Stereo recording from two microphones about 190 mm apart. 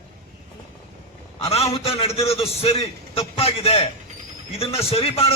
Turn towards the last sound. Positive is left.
turn(degrees=30)  # may be behind; listen again after turning